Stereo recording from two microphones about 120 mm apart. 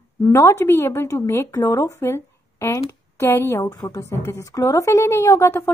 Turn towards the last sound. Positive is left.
turn(degrees=20)  # may be behind; listen again after turning